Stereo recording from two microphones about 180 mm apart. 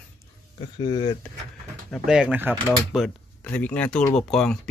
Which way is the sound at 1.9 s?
5° right (ahead or behind).